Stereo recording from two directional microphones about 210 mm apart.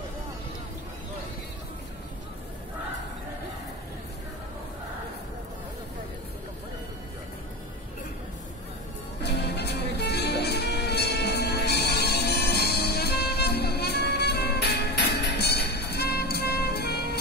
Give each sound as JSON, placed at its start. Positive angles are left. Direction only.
{"t": 9.2, "sound": "music", "side_deg": 50}